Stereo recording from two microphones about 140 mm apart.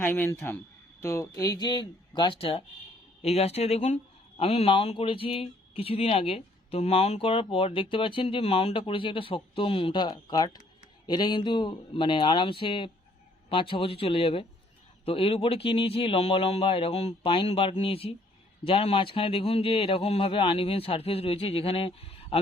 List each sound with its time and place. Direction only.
0.0 s a man's voice: 15° left (ahead or behind); by 17.2 s 50° left (ahead or behind)
17.2 s speech: 40° left (ahead or behind)